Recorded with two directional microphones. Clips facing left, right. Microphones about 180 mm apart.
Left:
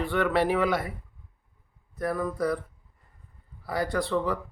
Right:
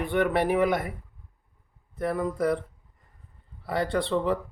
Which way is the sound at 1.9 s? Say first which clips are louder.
Right 1 dB; 25° right (ahead or behind).